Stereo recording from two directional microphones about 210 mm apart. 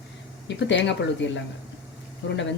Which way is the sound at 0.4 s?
55° left (ahead or behind).